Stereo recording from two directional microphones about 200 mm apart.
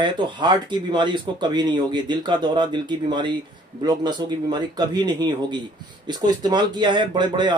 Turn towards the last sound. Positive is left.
turn(degrees=-20)  # may be behind; listen again after turning